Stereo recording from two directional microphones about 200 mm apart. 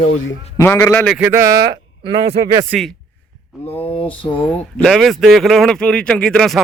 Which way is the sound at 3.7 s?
30° left (ahead or behind).